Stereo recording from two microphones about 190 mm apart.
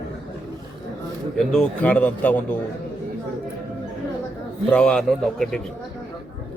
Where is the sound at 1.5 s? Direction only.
10° left (ahead or behind).